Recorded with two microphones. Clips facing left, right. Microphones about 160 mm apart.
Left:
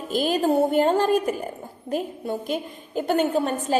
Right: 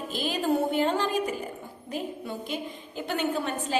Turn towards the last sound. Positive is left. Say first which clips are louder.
# left 6 dB
turn(degrees=45)  # may be behind; listen again after turning